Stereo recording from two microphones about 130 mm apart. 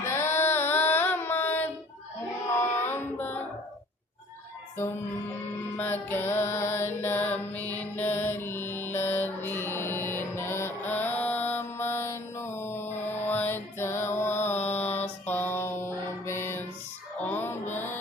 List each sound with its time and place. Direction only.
0.0 s a sound: 20° left (ahead or behind)
2.5 s carnatic music: 20° left (ahead or behind)
5.7 s music: 15° left (ahead or behind)
15.3 s mantra: 15° left (ahead or behind)
17.2 s music: 15° left (ahead or behind)